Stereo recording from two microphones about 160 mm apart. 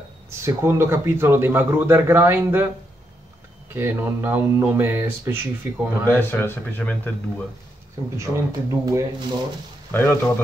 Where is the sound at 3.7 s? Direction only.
15° right (ahead or behind).